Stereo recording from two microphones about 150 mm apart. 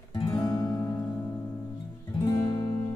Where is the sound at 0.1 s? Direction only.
35° left (ahead or behind).